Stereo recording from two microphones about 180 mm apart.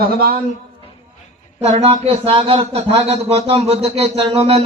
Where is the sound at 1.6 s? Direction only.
35° right (ahead or behind).